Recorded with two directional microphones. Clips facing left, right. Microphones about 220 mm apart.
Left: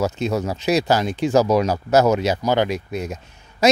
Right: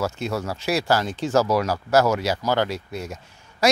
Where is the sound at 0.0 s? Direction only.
20° left (ahead or behind).